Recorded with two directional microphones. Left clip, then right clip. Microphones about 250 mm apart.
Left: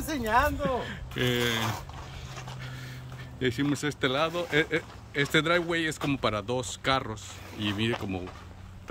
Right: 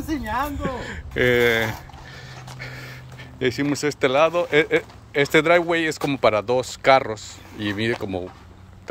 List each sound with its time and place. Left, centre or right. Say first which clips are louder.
0.0 s speech: even; left
0.6 s speech: right 1 dB; centre
2.6 s dog: right 8 dB; centre
3.3 s speech: right 6 dB; centre